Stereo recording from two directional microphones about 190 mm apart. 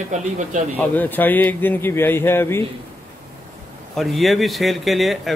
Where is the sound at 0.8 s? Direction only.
10° left (ahead or behind).